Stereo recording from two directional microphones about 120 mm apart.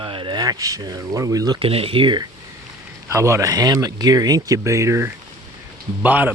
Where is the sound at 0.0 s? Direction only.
45° right (ahead or behind).